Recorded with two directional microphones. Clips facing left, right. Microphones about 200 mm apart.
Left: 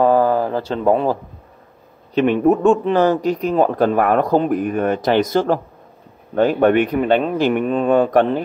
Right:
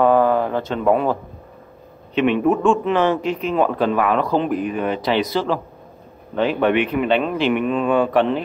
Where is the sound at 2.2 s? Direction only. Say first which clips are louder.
Left 2 dB; 40° left (ahead or behind).